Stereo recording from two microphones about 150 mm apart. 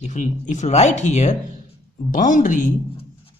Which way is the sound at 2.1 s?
60° left (ahead or behind).